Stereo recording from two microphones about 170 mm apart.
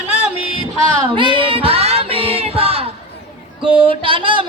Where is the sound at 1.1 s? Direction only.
30° right (ahead or behind).